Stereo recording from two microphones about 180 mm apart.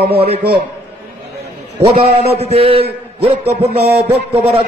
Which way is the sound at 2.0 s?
35° right (ahead or behind).